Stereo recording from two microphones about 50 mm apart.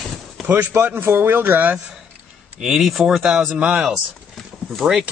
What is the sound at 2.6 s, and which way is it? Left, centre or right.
A man's voice, centre.